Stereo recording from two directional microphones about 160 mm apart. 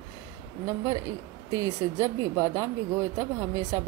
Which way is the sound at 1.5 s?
20° right (ahead or behind).